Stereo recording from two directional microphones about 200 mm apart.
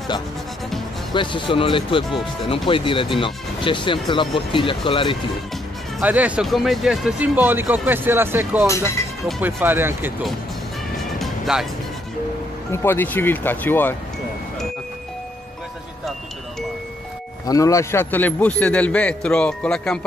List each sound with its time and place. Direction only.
1.1 s speech: 25° left (ahead or behind)
5.9 s speech: 5° right (ahead or behind)
8.6 s a man's voice: 15° left (ahead or behind)
9.2 s speech: 10° right (ahead or behind)
11.0 s music: centre (ahead or behind)
12.7 s a man's voice: 10° left (ahead or behind)
17.5 s a man's voice: 15° left (ahead or behind)